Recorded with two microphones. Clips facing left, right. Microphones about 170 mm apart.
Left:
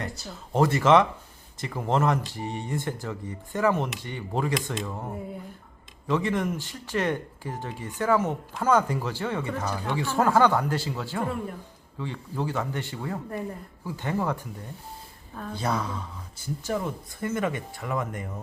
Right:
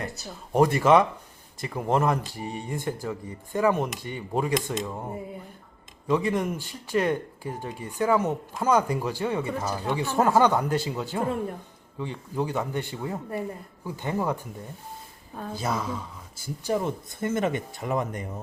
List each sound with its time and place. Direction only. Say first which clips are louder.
0.5 s speech: right 1 dB; 15° right (ahead or behind)
15.5 s speech: even; 5° right (ahead or behind)
16.6 s speech: right 4 dB; 20° right (ahead or behind)